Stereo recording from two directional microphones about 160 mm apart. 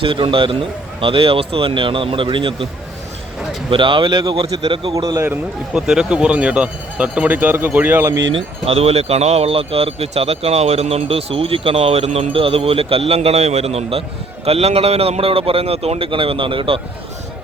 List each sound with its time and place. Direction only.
0.0 s speech: 30° right (ahead or behind)
3.7 s a man's voice: 30° right (ahead or behind)
5.7 s speech: 5° right (ahead or behind)
8.3 s speech: 40° right (ahead or behind)